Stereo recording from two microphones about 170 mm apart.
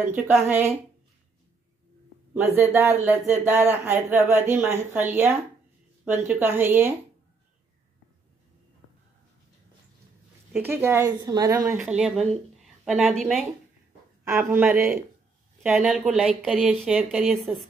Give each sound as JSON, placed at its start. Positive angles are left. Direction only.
{"t": 0.1, "sound": "speech", "side_deg": -15}
{"t": 2.3, "sound": "speech", "side_deg": -10}
{"t": 10.6, "sound": "speech", "side_deg": -15}
{"t": 12.0, "sound": "a woman's voice", "side_deg": 0}
{"t": 14.5, "sound": "a woman's voice", "side_deg": -10}